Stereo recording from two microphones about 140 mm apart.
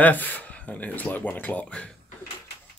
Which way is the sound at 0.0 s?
10° left (ahead or behind).